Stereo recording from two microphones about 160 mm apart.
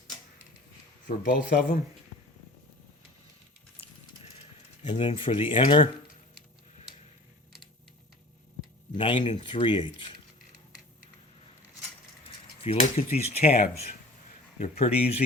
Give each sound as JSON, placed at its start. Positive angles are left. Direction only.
{"t": 1.3, "sound": "speech", "side_deg": 55}
{"t": 4.9, "sound": "speech", "side_deg": 35}
{"t": 8.9, "sound": "speech", "side_deg": 35}
{"t": 12.6, "sound": "speech", "side_deg": 40}
{"t": 14.6, "sound": "speech", "side_deg": 40}